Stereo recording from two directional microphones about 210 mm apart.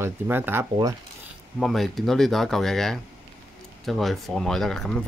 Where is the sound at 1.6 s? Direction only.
Centre (ahead or behind).